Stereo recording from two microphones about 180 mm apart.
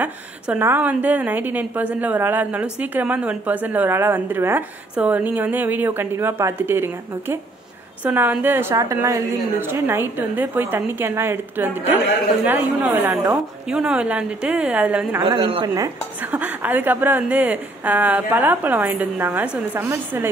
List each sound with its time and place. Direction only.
0.0 s a woman's voice: 10° right (ahead or behind)
15.2 s a woman's voice: 30° right (ahead or behind)
16.2 s a woman's voice: 10° right (ahead or behind)